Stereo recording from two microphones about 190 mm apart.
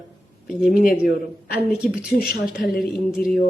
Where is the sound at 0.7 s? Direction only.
45° left (ahead or behind).